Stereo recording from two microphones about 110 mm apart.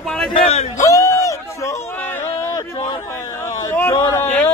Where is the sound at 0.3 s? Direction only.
65° left (ahead or behind).